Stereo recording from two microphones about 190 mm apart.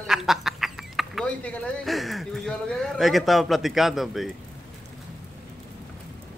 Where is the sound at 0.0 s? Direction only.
Centre (ahead or behind).